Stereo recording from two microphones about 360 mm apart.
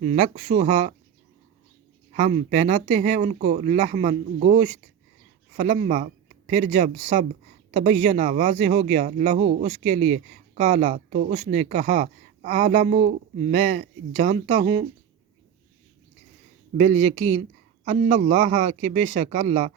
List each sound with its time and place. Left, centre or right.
0.0 s speech: centre
2.1 s speech: centre
16.7 s speech: centre